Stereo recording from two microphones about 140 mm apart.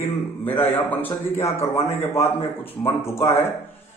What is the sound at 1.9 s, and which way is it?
Speech, 15° left (ahead or behind).